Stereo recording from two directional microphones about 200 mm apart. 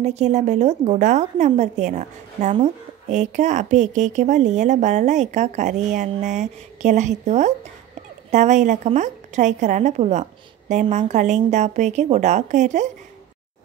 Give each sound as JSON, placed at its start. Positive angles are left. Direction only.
{"t": 0.0, "sound": "a woman's voice", "side_deg": -35}